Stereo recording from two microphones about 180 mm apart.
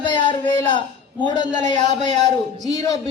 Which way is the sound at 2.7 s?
20° left (ahead or behind).